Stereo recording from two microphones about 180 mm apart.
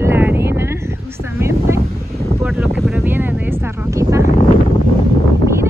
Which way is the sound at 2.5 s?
5° right (ahead or behind).